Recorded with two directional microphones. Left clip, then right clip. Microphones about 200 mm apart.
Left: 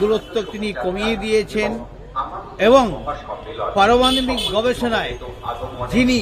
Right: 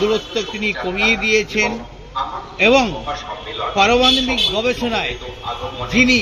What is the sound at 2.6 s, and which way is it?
A man's voice, 15° left (ahead or behind).